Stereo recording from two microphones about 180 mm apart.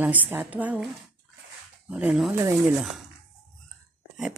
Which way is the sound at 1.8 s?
5° right (ahead or behind).